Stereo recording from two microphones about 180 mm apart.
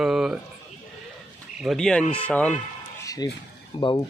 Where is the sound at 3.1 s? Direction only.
20° left (ahead or behind).